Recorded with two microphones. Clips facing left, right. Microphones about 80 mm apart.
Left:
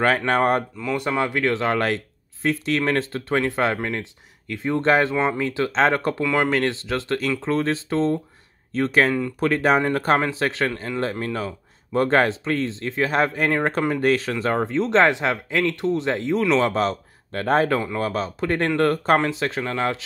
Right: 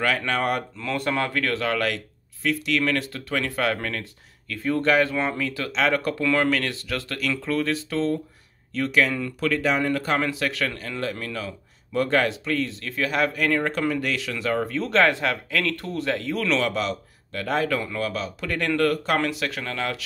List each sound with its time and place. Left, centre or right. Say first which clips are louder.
0.0 s speech: left 5 dB; left
0.7 s speech: left 2 dB; centre
6.2 s speech: left 2 dB; centre